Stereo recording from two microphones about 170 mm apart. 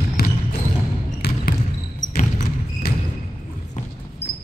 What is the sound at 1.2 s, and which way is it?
Basketball bounce, 70° left (ahead or behind).